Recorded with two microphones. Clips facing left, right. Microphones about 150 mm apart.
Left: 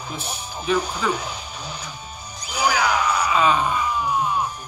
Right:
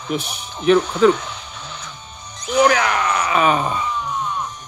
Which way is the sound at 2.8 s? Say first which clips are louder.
Right 1 dB; 60° right (ahead or behind).